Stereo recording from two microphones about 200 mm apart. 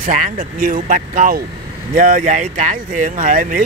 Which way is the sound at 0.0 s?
40° right (ahead or behind).